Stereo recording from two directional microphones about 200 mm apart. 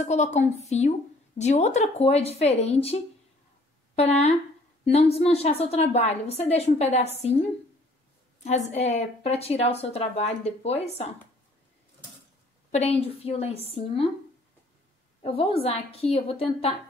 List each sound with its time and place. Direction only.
0.0 s a woman's voice: 35° left (ahead or behind)
8.5 s a woman's voice: 35° left (ahead or behind)
12.7 s a woman's voice: 30° left (ahead or behind)
15.2 s a woman's voice: 30° left (ahead or behind)